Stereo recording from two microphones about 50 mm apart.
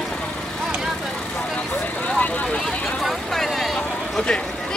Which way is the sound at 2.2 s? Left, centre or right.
Left.